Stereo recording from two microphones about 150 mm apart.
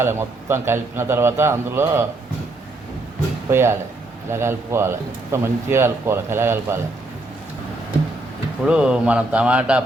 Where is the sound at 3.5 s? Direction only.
15° right (ahead or behind).